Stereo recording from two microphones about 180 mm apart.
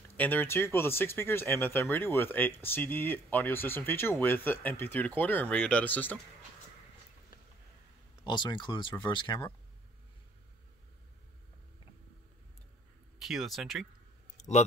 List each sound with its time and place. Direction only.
0.2 s speech: 10° left (ahead or behind)
8.2 s speech: 25° left (ahead or behind)
13.2 s speech: centre (ahead or behind)
14.3 s a sound: 40° left (ahead or behind)